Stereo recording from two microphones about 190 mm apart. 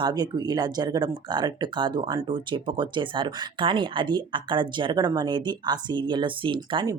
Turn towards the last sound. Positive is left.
turn(degrees=-25)  # may be behind; listen again after turning